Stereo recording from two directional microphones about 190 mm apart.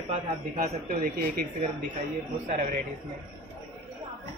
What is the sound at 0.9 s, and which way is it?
Speech, 50° right (ahead or behind).